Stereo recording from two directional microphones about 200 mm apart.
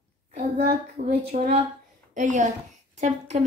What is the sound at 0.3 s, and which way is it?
A child's voice, 35° right (ahead or behind).